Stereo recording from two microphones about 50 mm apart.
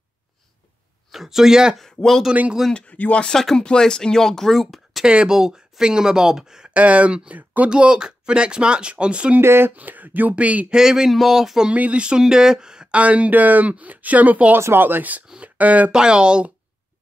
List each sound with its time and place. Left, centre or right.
1.1 s speech: centre
3.0 s speech: left
3.3 s speech: centre
5.0 s speech: centre
6.7 s speech: right
7.7 s speech: centre
9.4 s speech: right
9.8 s speech: right
10.7 s speech: centre
11.7 s speech: right
12.9 s speech: right
15.9 s speech: centre